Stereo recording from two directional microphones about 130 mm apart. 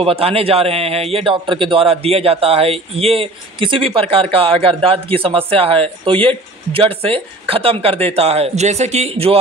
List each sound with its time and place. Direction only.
0.0 s a man's voice: 45° right (ahead or behind)